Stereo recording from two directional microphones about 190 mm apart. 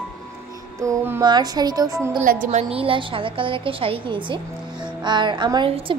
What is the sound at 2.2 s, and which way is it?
A woman's voice, 45° right (ahead or behind).